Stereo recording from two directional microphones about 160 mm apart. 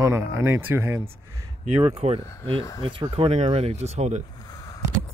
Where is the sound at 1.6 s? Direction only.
40° right (ahead or behind).